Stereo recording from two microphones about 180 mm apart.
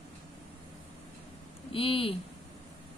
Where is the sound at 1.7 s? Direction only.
30° left (ahead or behind).